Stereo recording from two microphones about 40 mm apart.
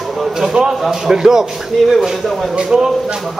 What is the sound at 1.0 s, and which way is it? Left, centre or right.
Speech, centre.